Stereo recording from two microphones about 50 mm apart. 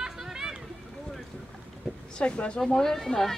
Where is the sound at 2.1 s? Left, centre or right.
Left.